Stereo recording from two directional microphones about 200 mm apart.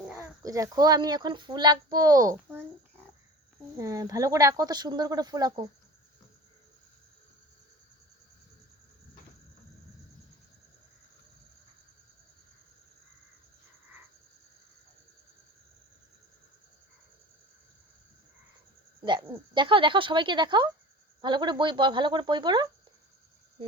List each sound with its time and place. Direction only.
0.1 s speech: 15° right (ahead or behind)
3.8 s speech: 15° right (ahead or behind)
19.5 s speech: 25° right (ahead or behind)